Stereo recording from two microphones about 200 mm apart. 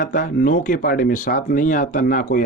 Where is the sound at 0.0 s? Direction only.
45° left (ahead or behind).